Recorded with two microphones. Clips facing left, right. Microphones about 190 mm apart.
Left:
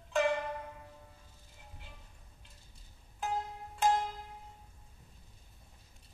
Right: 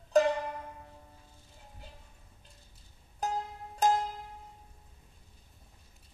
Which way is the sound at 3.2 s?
40° right (ahead or behind).